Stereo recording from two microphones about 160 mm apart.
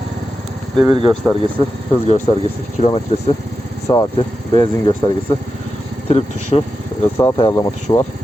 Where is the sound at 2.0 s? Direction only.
45° left (ahead or behind).